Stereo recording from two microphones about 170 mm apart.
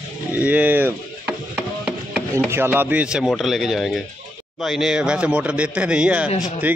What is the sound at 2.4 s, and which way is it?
A man's voice, 15° right (ahead or behind).